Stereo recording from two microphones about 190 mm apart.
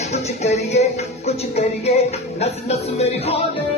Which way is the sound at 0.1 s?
35° left (ahead or behind).